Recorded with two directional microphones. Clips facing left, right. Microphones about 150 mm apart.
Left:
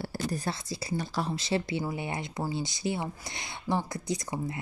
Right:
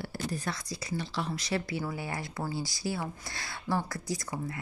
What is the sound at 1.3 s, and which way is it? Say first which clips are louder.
Speech: left 4 dB; 25° left (ahead or behind).